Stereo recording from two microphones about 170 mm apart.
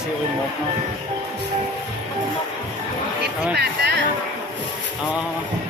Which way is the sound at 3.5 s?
75° right (ahead or behind).